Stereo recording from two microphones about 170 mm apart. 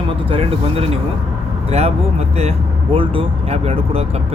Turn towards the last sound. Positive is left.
turn(degrees=-35)  # may be behind; listen again after turning